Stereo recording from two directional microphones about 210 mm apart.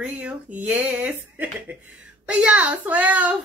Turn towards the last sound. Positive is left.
turn(degrees=-5)  # may be behind; listen again after turning